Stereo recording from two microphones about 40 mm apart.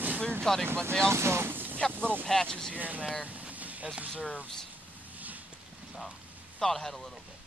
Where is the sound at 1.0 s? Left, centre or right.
Right.